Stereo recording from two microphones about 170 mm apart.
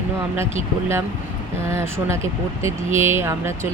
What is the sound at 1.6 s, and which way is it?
Speech, 15° right (ahead or behind).